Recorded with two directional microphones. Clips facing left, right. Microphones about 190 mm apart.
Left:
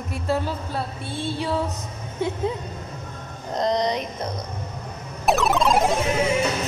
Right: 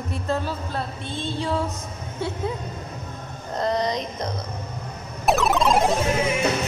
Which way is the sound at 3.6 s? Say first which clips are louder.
Left 1 dB; 15° left (ahead or behind).